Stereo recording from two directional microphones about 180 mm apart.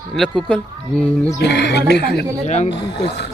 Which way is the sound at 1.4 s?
70° left (ahead or behind).